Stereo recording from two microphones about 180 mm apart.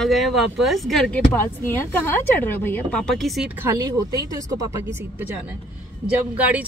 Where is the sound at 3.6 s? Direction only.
20° right (ahead or behind).